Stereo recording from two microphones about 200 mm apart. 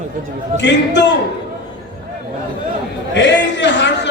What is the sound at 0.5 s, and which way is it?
Speech, 60° left (ahead or behind).